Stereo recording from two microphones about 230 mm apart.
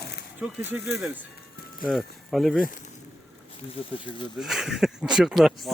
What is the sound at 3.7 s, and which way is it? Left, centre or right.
Speech, left.